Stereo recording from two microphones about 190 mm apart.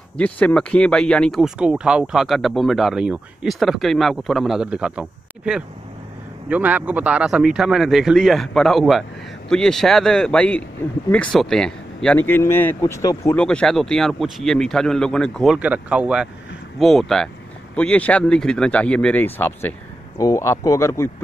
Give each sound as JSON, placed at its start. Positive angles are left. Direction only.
{"t": 0.2, "sound": "speech", "side_deg": 5}